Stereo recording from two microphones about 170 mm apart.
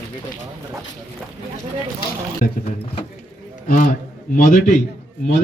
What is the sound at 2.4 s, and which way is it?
Speech, 55° left (ahead or behind).